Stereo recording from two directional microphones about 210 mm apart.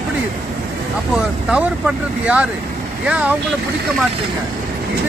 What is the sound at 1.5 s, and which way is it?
Speech, 5° right (ahead or behind).